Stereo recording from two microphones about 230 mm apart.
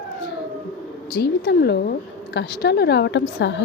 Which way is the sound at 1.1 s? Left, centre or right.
Left.